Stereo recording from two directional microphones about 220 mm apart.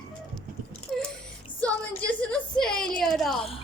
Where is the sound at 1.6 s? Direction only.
5° left (ahead or behind).